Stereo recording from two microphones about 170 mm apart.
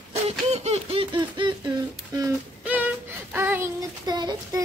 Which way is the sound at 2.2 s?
10° right (ahead or behind).